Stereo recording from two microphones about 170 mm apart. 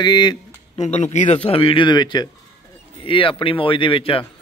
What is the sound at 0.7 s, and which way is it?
Speech, 40° left (ahead or behind).